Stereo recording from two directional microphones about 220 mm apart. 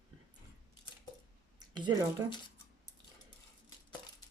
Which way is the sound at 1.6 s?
20° right (ahead or behind).